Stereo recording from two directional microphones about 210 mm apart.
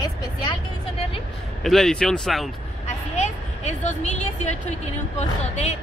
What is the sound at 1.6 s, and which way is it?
Speech, centre (ahead or behind).